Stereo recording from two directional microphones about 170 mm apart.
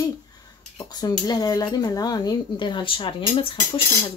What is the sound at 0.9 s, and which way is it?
Speech, 25° left (ahead or behind).